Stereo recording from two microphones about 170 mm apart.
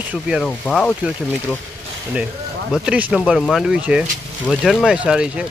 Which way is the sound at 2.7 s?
5° right (ahead or behind).